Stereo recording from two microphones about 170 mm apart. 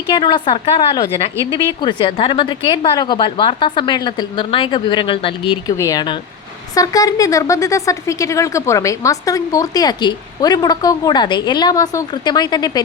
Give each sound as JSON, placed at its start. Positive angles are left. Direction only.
{"t": 0.1, "sound": "speech", "side_deg": 25}
{"t": 5.7, "sound": "speech", "side_deg": 20}